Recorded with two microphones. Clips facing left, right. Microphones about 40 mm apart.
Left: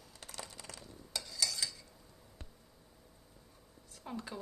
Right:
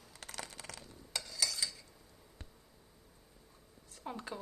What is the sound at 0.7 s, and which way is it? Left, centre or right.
Stir, centre.